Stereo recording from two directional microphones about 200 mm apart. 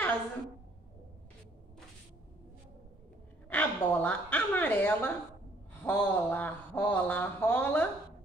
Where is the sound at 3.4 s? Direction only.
5° left (ahead or behind).